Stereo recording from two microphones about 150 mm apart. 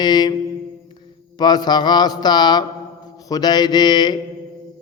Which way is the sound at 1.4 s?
30° left (ahead or behind).